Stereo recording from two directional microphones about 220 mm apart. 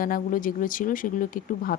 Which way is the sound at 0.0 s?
40° left (ahead or behind).